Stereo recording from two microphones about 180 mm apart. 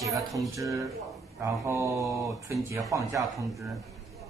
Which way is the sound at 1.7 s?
15° right (ahead or behind).